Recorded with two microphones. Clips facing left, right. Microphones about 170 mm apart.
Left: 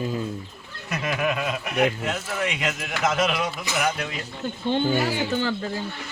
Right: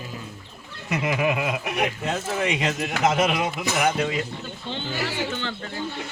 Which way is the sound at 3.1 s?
15° right (ahead or behind).